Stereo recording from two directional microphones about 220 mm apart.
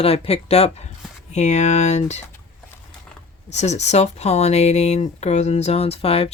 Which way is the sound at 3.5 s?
30° left (ahead or behind).